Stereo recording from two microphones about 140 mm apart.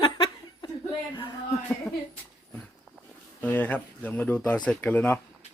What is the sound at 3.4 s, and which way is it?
Speech, 10° left (ahead or behind).